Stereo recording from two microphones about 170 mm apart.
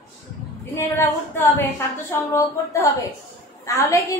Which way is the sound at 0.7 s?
15° left (ahead or behind).